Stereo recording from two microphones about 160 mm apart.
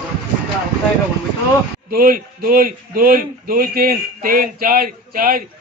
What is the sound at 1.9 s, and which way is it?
A man's voice, 65° right (ahead or behind).